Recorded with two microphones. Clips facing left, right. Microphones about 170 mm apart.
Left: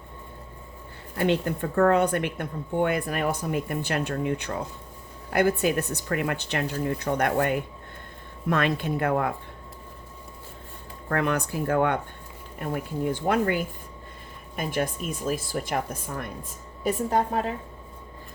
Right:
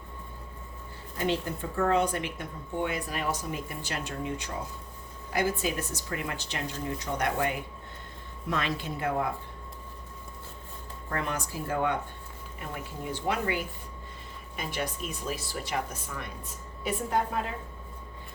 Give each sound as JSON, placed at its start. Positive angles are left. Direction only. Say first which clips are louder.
{"t": 1.1, "sound": "speech", "louder": "left 5 dB", "side_deg": 60}
{"t": 11.1, "sound": "speech", "louder": "left 7 dB", "side_deg": 60}
{"t": 16.8, "sound": "a woman's voice", "louder": "left 5 dB", "side_deg": 40}